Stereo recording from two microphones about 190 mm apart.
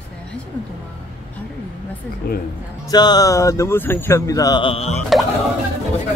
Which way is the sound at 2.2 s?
55° left (ahead or behind).